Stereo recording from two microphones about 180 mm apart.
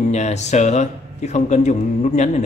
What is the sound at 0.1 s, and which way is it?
Speech, 40° left (ahead or behind).